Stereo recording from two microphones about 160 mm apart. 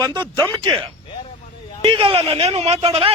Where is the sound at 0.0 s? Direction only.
25° right (ahead or behind).